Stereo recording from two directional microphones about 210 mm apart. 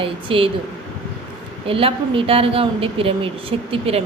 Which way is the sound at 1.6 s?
25° right (ahead or behind).